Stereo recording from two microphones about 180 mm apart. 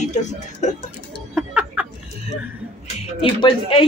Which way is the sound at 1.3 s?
5° right (ahead or behind).